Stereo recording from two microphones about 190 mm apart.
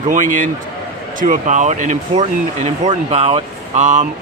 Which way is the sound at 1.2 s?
40° right (ahead or behind).